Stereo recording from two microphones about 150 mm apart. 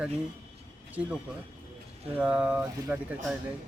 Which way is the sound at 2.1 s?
10° right (ahead or behind).